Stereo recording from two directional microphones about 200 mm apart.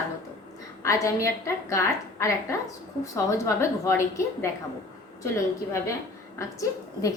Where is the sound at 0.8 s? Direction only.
15° left (ahead or behind).